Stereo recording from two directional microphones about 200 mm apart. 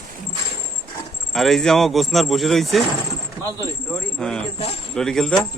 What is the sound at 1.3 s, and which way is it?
Speech, centre (ahead or behind).